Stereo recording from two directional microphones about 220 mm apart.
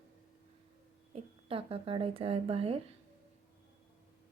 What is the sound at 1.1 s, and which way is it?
Speech, 25° right (ahead or behind).